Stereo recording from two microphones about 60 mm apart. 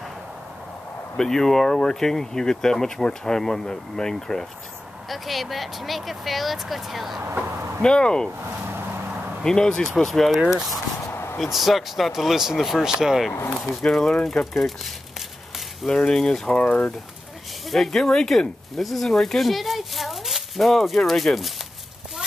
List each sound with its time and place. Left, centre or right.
1.1 s speech: centre
7.4 s a sound: right
7.8 s speech: centre
9.4 s speech: centre
11.1 s a sound: left
11.4 s speech: centre
13.8 s speech: centre
14.2 s speech: centre
15.9 s speech: centre
17.6 s speech: centre